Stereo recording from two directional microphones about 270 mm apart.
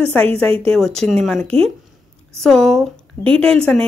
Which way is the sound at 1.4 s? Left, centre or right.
Right.